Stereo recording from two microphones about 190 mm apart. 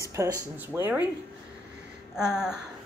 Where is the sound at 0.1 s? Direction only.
15° right (ahead or behind).